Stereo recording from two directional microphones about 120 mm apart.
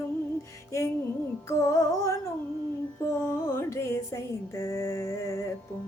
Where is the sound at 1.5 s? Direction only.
25° left (ahead or behind).